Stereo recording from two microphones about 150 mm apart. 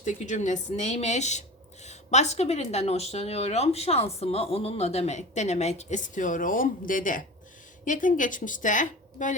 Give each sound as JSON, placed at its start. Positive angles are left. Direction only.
{"t": 0.0, "sound": "a woman's voice", "side_deg": 55}